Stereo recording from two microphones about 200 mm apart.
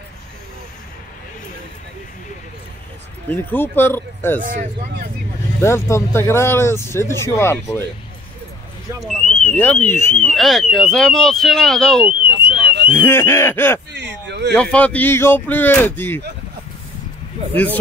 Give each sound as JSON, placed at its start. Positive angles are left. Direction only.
{"t": 3.3, "sound": "speech", "side_deg": 10}
{"t": 4.4, "sound": "speech", "side_deg": -40}
{"t": 5.6, "sound": "speech", "side_deg": 15}
{"t": 9.0, "sound": "speech", "side_deg": 5}
{"t": 10.3, "sound": "speech", "side_deg": 0}
{"t": 12.2, "sound": "alarm", "side_deg": -55}
{"t": 12.9, "sound": "speech", "side_deg": 10}
{"t": 13.9, "sound": "a sound", "side_deg": -60}
{"t": 14.5, "sound": "speech", "side_deg": 5}